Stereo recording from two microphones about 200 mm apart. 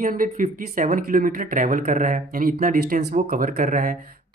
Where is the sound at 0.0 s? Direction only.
40° right (ahead or behind).